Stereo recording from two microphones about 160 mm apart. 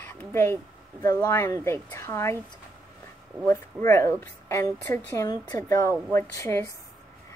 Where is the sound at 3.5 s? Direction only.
15° left (ahead or behind).